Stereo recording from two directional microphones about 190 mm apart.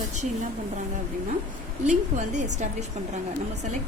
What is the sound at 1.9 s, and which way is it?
Speech, 40° right (ahead or behind).